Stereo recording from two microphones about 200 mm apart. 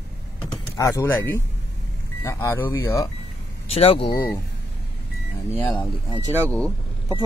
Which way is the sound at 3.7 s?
30° left (ahead or behind).